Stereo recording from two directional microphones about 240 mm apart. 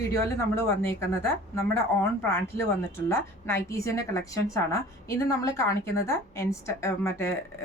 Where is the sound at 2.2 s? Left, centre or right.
Centre.